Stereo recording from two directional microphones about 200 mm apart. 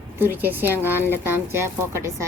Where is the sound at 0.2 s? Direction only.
10° right (ahead or behind).